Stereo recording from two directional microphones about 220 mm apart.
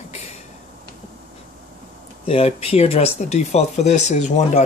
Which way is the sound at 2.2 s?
25° left (ahead or behind).